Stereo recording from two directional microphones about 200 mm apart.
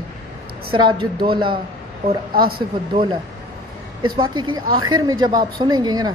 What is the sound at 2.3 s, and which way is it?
Speech, 45° right (ahead or behind).